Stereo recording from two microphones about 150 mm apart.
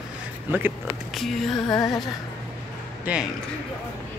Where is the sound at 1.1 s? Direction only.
Centre (ahead or behind).